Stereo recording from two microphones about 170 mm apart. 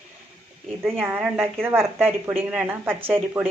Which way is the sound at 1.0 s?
10° right (ahead or behind).